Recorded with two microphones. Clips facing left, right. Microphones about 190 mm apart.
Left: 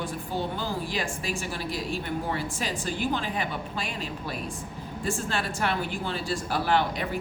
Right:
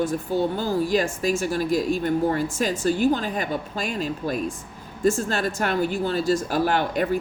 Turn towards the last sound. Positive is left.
turn(degrees=-45)  # may be behind; listen again after turning